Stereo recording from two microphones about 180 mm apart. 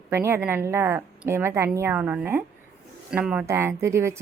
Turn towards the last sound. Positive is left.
turn(degrees=-15)  # may be behind; listen again after turning